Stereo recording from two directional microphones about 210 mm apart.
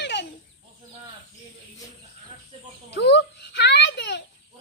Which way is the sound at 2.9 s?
55° left (ahead or behind).